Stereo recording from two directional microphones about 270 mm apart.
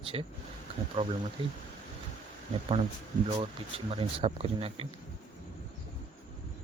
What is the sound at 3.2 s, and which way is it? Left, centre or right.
Speech, centre.